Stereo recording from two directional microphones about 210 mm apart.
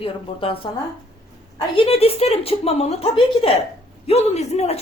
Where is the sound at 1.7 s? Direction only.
25° left (ahead or behind).